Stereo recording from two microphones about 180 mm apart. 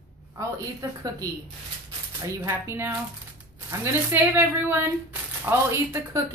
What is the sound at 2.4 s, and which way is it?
A woman's voice, 15° right (ahead or behind).